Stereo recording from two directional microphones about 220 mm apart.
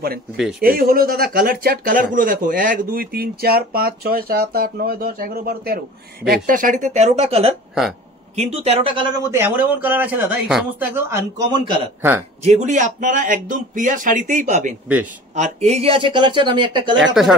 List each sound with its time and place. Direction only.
0.6 s a man's voice: 40° right (ahead or behind); by 11.9 s 20° right (ahead or behind)
12.4 s speech: 30° right (ahead or behind)
17.0 s speech: centre (ahead or behind)